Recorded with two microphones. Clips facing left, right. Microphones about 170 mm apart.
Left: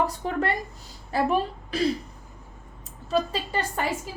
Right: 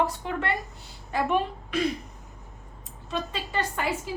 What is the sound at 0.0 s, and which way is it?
A woman's voice, 40° left (ahead or behind).